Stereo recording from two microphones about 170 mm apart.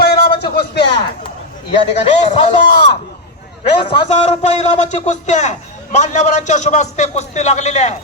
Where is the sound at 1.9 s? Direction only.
40° left (ahead or behind).